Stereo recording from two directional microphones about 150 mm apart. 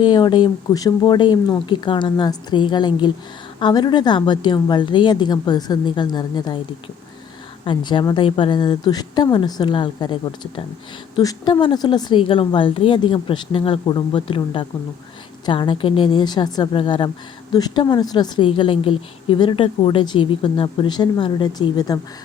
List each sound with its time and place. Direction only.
0.0 s a woman's voice: 30° left (ahead or behind)
7.6 s a woman's voice: 30° left (ahead or behind)